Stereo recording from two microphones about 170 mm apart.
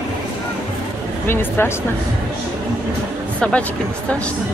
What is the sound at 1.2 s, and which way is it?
Speech, 15° left (ahead or behind).